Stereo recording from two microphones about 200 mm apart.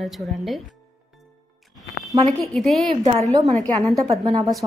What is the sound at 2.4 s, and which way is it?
A woman's voice, centre (ahead or behind).